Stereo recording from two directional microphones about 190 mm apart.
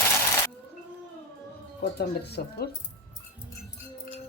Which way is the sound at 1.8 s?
60° left (ahead or behind).